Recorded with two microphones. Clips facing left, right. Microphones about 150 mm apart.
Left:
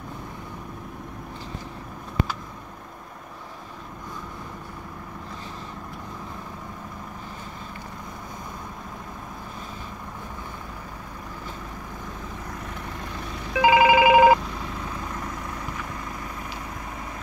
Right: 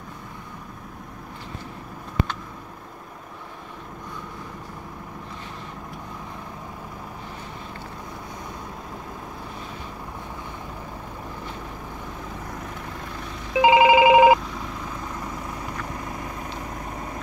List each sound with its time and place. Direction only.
13.5 s telephone: 20° right (ahead or behind)